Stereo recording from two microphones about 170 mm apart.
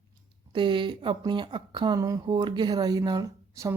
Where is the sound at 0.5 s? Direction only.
30° right (ahead or behind).